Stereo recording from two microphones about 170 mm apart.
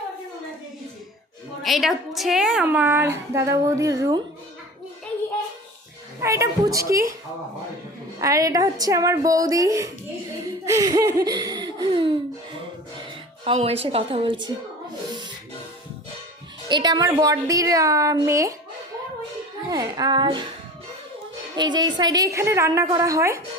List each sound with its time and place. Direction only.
1.6 s a woman's voice: centre (ahead or behind); by 4.2 s 20° right (ahead or behind)
6.2 s a woman's voice: 15° right (ahead or behind)
8.2 s a woman's voice: 20° right (ahead or behind)
10.4 s a sound: 20° right (ahead or behind)
13.4 s a woman's voice: 35° right (ahead or behind)
16.6 s a woman's voice: 25° right (ahead or behind)
19.6 s a woman's voice: 20° right (ahead or behind)
21.5 s a woman's voice: 25° right (ahead or behind)